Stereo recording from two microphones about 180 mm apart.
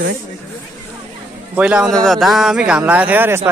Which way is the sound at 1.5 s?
5° right (ahead or behind).